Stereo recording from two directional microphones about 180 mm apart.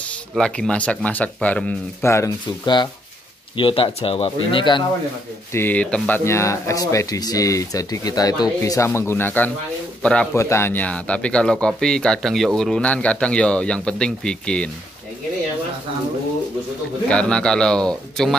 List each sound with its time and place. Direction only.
0.3 s speech: 5° left (ahead or behind); by 4.8 s 25° left (ahead or behind)
5.5 s speech: 10° left (ahead or behind)
17.1 s speech: 5° left (ahead or behind)